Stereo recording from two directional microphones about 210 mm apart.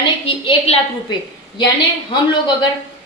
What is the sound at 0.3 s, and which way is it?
Speech, 25° left (ahead or behind).